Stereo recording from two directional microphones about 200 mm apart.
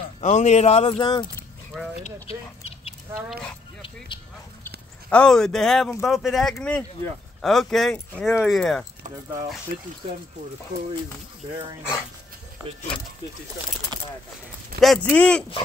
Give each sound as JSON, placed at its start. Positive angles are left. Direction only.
{"t": 0.2, "sound": "speech", "side_deg": 35}
{"t": 1.7, "sound": "speech", "side_deg": 0}
{"t": 2.2, "sound": "speech", "side_deg": 30}
{"t": 5.1, "sound": "speech", "side_deg": 5}
{"t": 14.8, "sound": "speech", "side_deg": 0}